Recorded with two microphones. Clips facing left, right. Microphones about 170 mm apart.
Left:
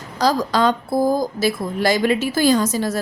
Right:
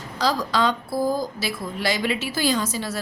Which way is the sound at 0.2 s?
45° left (ahead or behind).